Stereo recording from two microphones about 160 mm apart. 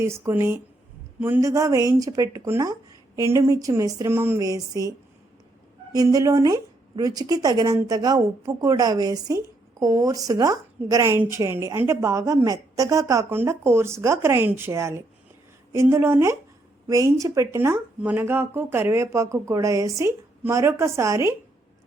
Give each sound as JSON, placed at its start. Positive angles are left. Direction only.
{"t": 0.0, "sound": "a woman's voice", "side_deg": -15}